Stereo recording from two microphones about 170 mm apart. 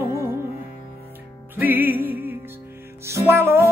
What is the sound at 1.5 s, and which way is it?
Music, 10° right (ahead or behind).